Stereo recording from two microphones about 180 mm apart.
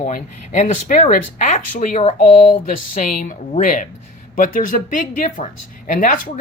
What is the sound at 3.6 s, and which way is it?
Speech, 45° left (ahead or behind).